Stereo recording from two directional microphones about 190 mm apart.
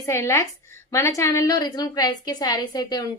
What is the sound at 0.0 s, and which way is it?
A woman's voice, 15° left (ahead or behind).